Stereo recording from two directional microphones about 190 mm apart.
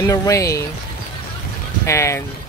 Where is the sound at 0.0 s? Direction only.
15° left (ahead or behind).